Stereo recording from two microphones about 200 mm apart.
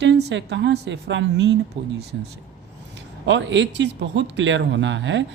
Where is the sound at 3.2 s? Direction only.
65° right (ahead or behind).